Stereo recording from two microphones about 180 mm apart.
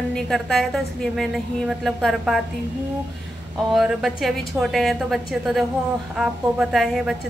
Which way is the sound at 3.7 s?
Centre (ahead or behind).